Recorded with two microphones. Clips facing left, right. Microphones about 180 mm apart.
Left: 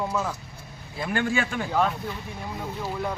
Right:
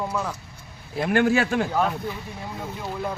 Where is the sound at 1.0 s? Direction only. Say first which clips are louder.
Right 6 dB; 65° right (ahead or behind).